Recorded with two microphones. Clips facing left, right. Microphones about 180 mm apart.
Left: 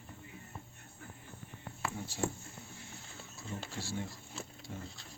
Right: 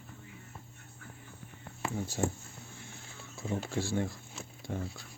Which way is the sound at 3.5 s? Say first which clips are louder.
Right 8 dB; 55° right (ahead or behind).